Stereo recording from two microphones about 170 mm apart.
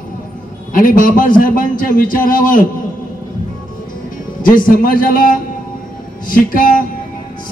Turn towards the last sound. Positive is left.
turn(degrees=55)  # may be behind; listen again after turning